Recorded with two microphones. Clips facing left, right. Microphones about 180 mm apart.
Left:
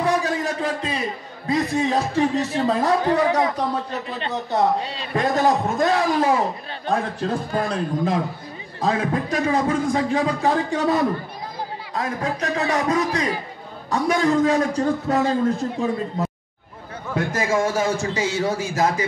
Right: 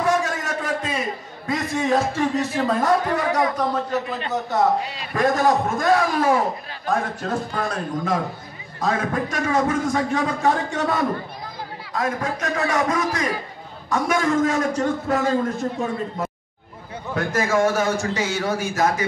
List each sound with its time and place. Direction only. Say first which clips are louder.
0.0 s a sound: left 1 dB; 35° left (ahead or behind)
1.5 s speech: left 1 dB; 35° left (ahead or behind)
17.3 s a man's voice: right 3 dB; 30° left (ahead or behind)